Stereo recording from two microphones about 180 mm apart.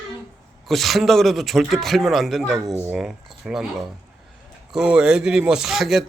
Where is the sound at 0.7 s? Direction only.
Centre (ahead or behind).